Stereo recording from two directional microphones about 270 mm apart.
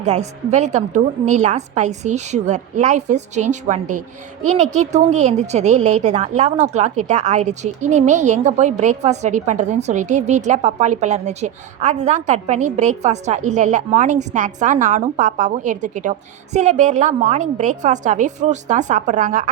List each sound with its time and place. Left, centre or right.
0.0 s a woman's voice: right